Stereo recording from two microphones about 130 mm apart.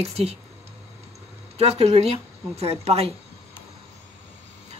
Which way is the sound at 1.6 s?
55° right (ahead or behind).